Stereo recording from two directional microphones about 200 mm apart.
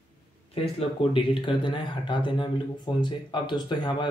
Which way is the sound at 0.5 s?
25° left (ahead or behind).